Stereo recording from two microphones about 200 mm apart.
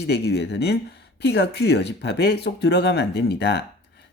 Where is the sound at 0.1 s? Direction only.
55° left (ahead or behind).